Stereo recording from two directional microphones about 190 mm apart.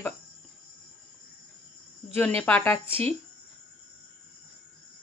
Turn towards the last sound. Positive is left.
turn(degrees=-30)  # may be behind; listen again after turning